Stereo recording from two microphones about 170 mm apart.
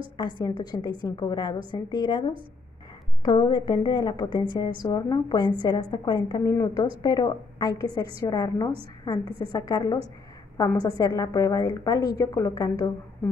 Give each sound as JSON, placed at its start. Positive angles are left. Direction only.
{"t": 0.4, "sound": "a woman's voice", "side_deg": 25}